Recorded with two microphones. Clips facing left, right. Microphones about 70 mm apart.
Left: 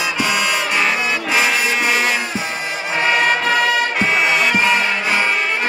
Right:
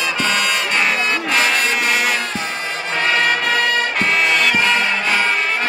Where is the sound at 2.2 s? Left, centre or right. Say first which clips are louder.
Even; centre.